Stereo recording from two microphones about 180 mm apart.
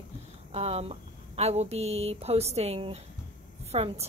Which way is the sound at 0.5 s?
35° right (ahead or behind).